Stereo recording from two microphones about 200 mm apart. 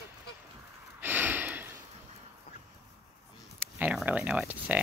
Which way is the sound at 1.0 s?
10° right (ahead or behind).